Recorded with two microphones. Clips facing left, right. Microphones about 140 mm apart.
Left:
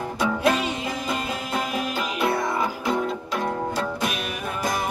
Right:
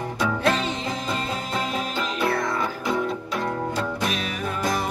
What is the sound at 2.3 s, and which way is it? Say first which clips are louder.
Music: left 1 dB; 20° left (ahead or behind).